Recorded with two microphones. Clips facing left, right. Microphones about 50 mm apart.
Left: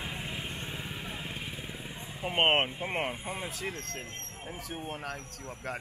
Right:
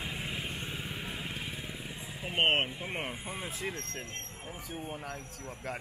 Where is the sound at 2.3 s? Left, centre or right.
Centre.